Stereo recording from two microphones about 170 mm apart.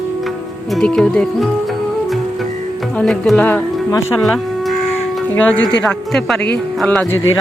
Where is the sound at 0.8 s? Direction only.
5° left (ahead or behind).